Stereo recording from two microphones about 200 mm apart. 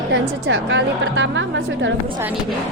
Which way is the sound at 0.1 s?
60° right (ahead or behind).